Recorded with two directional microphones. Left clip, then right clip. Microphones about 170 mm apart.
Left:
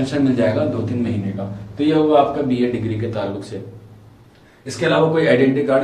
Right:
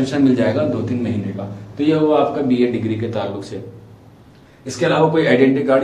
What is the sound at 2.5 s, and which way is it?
Speech, 30° right (ahead or behind).